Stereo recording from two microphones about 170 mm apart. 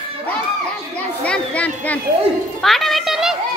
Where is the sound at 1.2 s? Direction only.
10° left (ahead or behind).